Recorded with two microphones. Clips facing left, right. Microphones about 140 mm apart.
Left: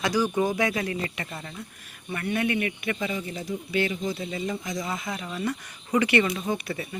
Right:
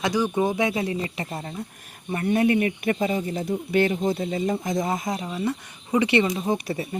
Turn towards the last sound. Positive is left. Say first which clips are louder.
# right 4 dB
turn(degrees=-35)  # may be behind; listen again after turning